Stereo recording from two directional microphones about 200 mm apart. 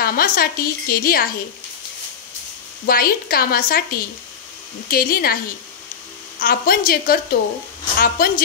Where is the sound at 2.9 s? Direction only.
45° left (ahead or behind).